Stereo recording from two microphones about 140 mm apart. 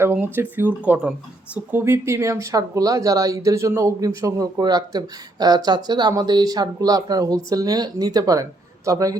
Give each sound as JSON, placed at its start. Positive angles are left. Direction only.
{"t": 0.0, "sound": "speech", "side_deg": -15}